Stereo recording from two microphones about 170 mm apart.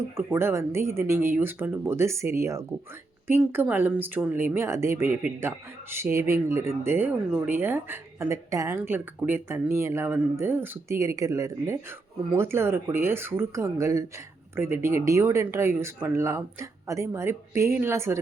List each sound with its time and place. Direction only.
0.2 s speech: 15° right (ahead or behind)